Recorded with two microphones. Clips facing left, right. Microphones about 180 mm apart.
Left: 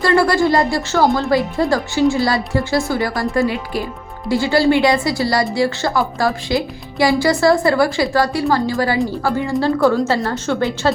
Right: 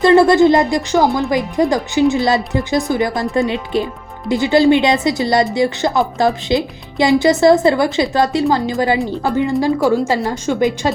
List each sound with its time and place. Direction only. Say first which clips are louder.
0.0 s a woman's voice: right 5 dB; 20° right (ahead or behind)